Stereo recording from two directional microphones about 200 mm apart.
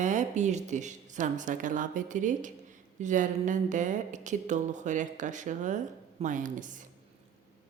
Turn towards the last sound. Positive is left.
turn(degrees=-40)  # may be behind; listen again after turning